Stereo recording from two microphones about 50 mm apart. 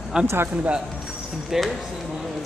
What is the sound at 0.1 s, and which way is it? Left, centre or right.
Speech, centre.